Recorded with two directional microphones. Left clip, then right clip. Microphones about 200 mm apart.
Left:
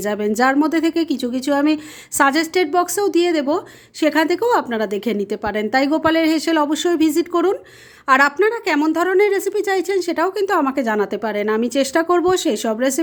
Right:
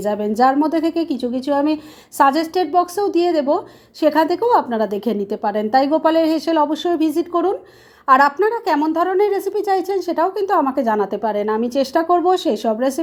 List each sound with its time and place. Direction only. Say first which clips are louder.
0.0 s a woman's voice: right 2 dB; 25° left (ahead or behind)